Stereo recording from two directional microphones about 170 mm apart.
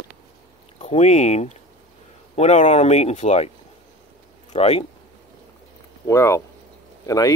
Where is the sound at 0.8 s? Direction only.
40° left (ahead or behind).